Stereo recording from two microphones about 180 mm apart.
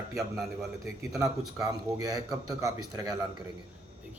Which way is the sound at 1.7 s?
20° right (ahead or behind).